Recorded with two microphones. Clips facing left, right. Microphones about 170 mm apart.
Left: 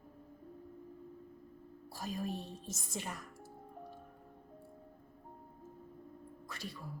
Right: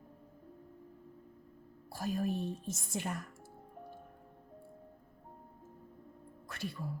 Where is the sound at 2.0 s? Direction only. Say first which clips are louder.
Right 6 dB; 55° right (ahead or behind).